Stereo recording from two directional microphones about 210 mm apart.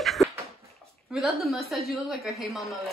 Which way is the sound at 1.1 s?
Centre (ahead or behind).